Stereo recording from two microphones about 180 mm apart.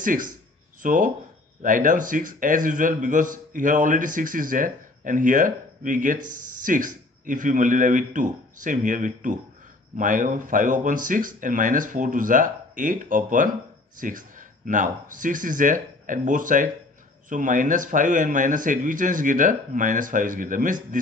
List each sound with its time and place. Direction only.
0.0 s a man's voice: 50° right (ahead or behind)